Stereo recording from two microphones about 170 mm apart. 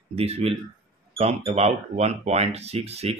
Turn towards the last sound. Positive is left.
turn(degrees=-40)  # may be behind; listen again after turning